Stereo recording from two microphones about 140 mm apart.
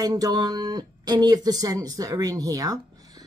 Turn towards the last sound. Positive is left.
turn(degrees=-25)  # may be behind; listen again after turning